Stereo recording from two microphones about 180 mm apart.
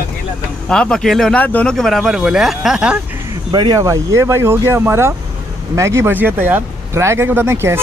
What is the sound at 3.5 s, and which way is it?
Speech, 25° right (ahead or behind).